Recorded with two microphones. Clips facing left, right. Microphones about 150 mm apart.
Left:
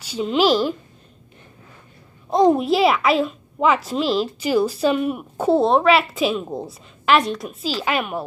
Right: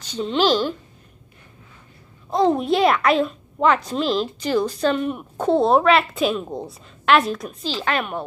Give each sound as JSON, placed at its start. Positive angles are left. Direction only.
{"t": 0.0, "sound": "speech", "side_deg": 5}
{"t": 2.2, "sound": "a sound", "side_deg": 20}
{"t": 2.5, "sound": "a woman's voice", "side_deg": 5}